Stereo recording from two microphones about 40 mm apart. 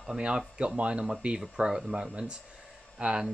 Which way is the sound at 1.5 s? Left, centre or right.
Centre.